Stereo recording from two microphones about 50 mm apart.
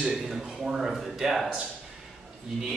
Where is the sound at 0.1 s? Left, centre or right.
Centre.